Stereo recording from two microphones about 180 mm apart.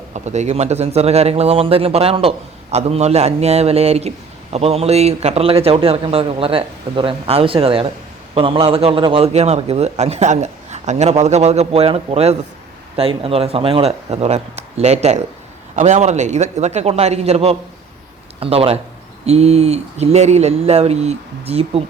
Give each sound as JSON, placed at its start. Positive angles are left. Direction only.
{"t": 0.1, "sound": "a man's voice", "side_deg": -40}